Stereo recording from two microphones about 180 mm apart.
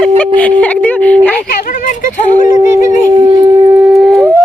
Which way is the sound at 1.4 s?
55° left (ahead or behind).